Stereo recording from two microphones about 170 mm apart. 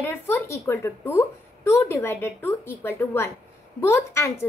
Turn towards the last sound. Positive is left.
turn(degrees=15)  # may be behind; listen again after turning